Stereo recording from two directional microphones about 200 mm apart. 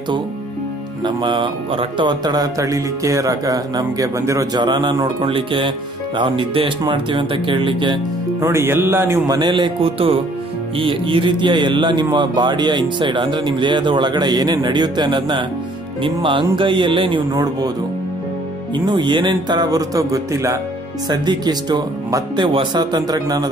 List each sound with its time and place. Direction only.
1.0 s speech: 25° right (ahead or behind)
18.9 s speech: 25° right (ahead or behind)